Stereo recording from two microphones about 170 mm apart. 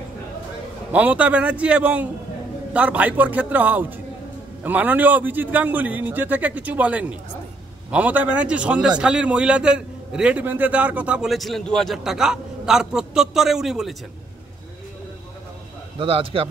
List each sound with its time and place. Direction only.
0.9 s a man's voice: 10° right (ahead or behind)
16.0 s a man's voice: 30° right (ahead or behind)